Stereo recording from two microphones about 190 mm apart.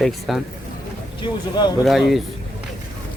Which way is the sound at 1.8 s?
Centre (ahead or behind).